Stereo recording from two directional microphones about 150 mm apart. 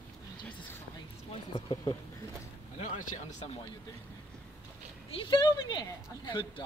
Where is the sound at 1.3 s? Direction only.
30° left (ahead or behind).